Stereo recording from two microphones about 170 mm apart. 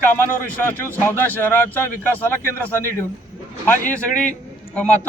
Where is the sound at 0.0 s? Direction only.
15° left (ahead or behind).